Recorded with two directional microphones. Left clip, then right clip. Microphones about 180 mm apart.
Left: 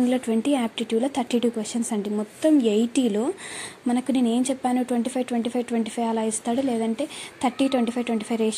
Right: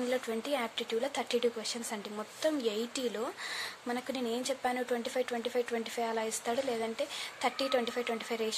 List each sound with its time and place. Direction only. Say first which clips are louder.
0.1 s speech: left 9 dB; 15° left (ahead or behind)